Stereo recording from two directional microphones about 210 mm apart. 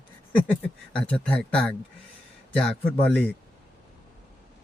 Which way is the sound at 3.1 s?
5° left (ahead or behind).